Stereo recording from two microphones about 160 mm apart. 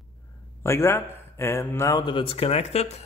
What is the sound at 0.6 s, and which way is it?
A man's voice, 15° left (ahead or behind).